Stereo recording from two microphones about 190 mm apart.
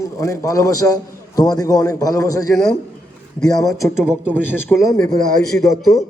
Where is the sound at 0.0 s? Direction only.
15° left (ahead or behind).